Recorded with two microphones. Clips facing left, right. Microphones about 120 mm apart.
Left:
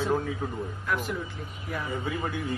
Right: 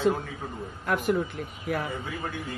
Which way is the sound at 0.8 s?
50° right (ahead or behind).